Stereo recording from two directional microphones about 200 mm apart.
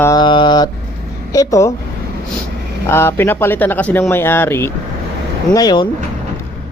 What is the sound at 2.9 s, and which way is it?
Speech, 10° left (ahead or behind).